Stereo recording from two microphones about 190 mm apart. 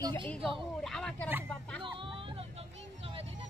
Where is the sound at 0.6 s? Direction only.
Centre (ahead or behind).